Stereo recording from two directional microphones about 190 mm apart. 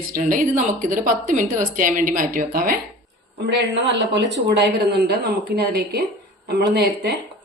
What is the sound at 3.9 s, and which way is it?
Speech, 65° right (ahead or behind).